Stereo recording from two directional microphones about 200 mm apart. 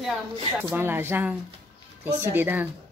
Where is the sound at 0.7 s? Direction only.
10° right (ahead or behind).